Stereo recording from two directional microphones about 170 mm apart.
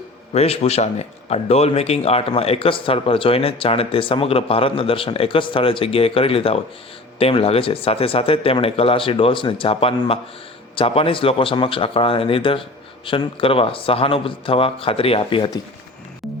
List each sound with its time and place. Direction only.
0.3 s a man's voice: 40° left (ahead or behind)